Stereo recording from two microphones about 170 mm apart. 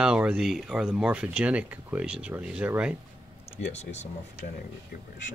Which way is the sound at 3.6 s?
40° left (ahead or behind).